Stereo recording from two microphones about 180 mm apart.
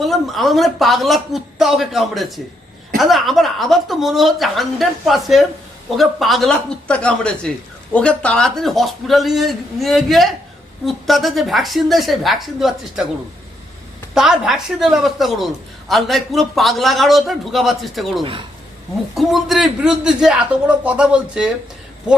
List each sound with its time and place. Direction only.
0.0 s a woman's voice: centre (ahead or behind)
14.1 s a woman's voice: 5° right (ahead or behind)
18.2 s speech: 30° right (ahead or behind)
19.1 s a woman's voice: centre (ahead or behind)